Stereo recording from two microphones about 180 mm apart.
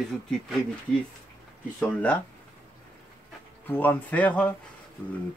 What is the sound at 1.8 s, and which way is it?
Speech, 10° left (ahead or behind).